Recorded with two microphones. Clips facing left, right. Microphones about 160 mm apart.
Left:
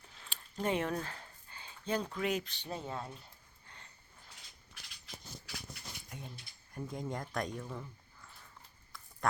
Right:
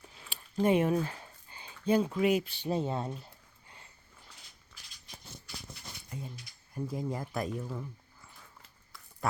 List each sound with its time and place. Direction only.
0.6 s speech: 15° right (ahead or behind)
2.7 s speech: 20° right (ahead or behind)
6.1 s speech: centre (ahead or behind)